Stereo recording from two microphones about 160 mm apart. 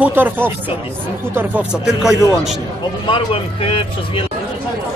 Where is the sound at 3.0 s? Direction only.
35° left (ahead or behind).